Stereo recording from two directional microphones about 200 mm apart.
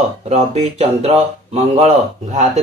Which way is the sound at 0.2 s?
35° right (ahead or behind).